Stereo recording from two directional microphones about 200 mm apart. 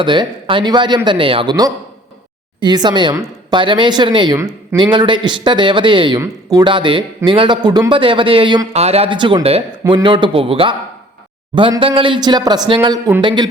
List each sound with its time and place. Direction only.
0.0 s speech: 25° right (ahead or behind)